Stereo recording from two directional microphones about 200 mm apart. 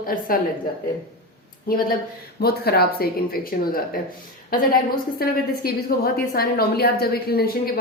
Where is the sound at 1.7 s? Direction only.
45° left (ahead or behind).